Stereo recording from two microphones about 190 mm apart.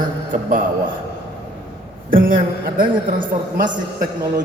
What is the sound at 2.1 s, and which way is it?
A man's voice, 50° right (ahead or behind).